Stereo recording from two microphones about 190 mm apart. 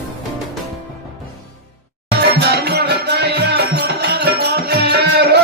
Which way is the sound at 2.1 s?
60° right (ahead or behind).